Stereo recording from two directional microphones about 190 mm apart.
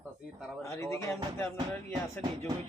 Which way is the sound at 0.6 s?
15° left (ahead or behind).